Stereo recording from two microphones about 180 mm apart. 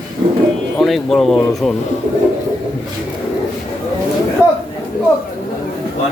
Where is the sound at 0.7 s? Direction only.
Centre (ahead or behind).